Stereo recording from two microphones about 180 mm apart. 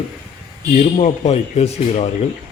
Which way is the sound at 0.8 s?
40° left (ahead or behind).